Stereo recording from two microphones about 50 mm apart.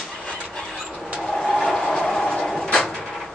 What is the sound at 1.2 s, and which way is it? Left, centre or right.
Vehicle, centre.